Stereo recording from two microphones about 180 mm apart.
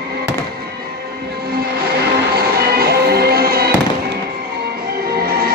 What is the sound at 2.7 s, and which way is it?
Music, 60° right (ahead or behind).